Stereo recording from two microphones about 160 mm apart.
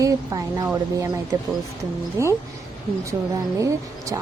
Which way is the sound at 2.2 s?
20° right (ahead or behind).